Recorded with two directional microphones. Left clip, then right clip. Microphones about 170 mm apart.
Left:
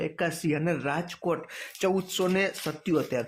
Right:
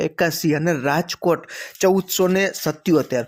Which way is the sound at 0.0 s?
35° right (ahead or behind).